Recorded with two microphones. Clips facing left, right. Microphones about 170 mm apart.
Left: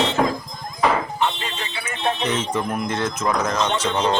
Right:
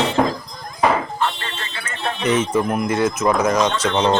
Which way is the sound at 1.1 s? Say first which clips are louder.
Even; 15° left (ahead or behind).